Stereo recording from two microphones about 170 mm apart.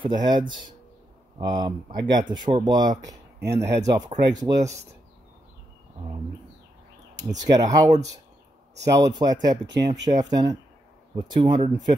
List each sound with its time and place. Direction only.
0.0 s speech: 25° right (ahead or behind)
1.4 s speech: 25° right (ahead or behind)
7.4 s speech: 20° right (ahead or behind)